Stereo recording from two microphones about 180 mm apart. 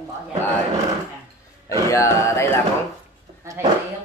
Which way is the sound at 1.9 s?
15° left (ahead or behind).